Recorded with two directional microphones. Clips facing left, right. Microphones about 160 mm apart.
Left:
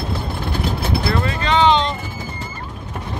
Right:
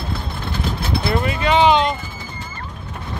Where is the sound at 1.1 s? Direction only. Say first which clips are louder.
Right 3 dB; 10° right (ahead or behind).